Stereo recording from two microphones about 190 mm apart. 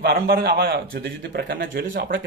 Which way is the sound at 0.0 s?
55° right (ahead or behind).